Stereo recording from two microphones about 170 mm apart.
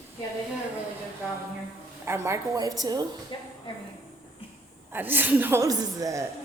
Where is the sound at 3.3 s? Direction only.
25° left (ahead or behind).